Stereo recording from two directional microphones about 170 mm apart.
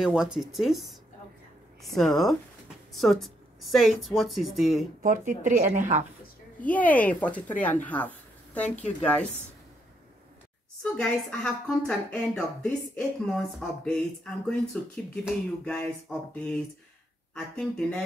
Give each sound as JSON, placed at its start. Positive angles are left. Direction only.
{"t": 0.0, "sound": "a woman's voice", "side_deg": -5}
{"t": 5.0, "sound": "speech", "side_deg": -50}
{"t": 6.6, "sound": "a woman's voice", "side_deg": 10}
{"t": 10.8, "sound": "a woman's voice", "side_deg": 5}